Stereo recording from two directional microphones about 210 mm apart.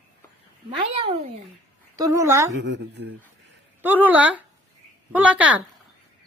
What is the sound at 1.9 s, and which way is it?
Speech, 15° right (ahead or behind).